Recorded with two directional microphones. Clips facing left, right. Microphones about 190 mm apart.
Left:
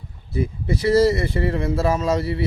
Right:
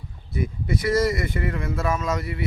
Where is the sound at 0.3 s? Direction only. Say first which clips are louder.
Left 3 dB; 30° left (ahead or behind).